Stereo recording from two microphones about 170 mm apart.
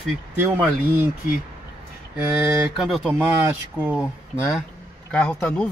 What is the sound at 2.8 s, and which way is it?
A man's voice, centre (ahead or behind).